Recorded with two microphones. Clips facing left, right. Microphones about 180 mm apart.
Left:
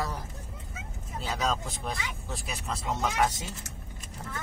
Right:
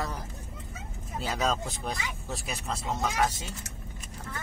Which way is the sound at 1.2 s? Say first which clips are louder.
Right 1 dB; centre (ahead or behind).